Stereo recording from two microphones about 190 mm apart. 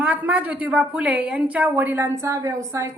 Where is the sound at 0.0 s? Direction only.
5° right (ahead or behind).